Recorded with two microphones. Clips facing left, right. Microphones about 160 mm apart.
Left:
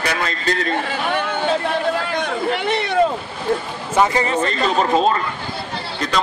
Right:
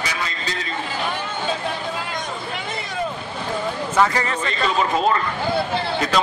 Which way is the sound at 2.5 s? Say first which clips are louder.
Left 9 dB; 75° left (ahead or behind).